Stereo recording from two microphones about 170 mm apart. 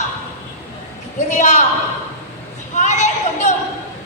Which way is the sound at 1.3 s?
45° left (ahead or behind).